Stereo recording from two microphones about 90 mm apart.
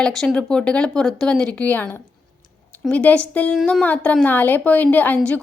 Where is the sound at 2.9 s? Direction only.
15° left (ahead or behind).